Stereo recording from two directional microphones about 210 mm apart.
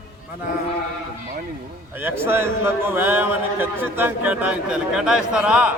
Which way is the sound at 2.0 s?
10° right (ahead or behind).